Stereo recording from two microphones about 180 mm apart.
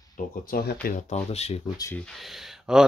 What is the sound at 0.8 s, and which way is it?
Speech, 40° left (ahead or behind).